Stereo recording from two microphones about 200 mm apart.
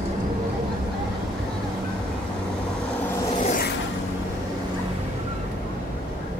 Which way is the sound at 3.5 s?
50° left (ahead or behind).